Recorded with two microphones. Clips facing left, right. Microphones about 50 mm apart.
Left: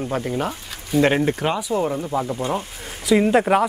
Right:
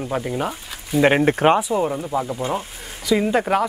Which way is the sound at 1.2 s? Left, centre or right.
Right.